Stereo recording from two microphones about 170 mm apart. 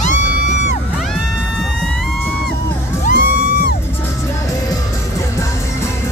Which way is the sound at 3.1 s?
55° left (ahead or behind).